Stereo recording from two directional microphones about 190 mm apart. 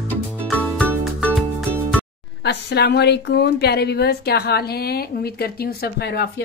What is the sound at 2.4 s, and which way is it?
A woman's voice, 60° left (ahead or behind).